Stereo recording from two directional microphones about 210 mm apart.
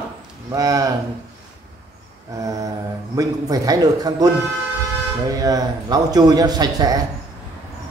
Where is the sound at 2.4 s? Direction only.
15° right (ahead or behind).